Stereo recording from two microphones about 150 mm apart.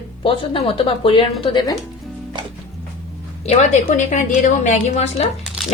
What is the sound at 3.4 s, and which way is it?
A woman's voice, 45° left (ahead or behind).